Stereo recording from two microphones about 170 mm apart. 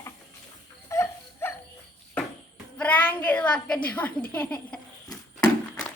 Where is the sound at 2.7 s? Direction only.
10° left (ahead or behind).